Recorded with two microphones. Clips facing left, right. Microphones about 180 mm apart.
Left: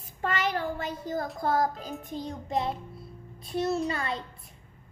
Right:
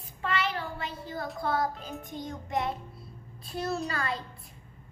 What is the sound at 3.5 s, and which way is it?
Speech, 25° left (ahead or behind).